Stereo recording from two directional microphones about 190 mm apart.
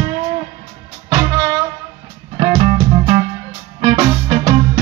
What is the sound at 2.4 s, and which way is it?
Music, 35° right (ahead or behind).